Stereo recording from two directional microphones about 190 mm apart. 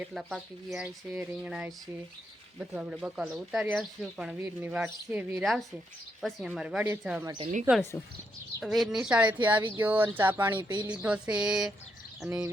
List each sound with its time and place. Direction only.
0.0 s speech: centre (ahead or behind)
7.3 s speech: 25° right (ahead or behind)
7.8 s speech: 10° left (ahead or behind)
8.6 s speech: centre (ahead or behind)
10.5 s speech: 25° right (ahead or behind)
11.0 s speech: 5° right (ahead or behind)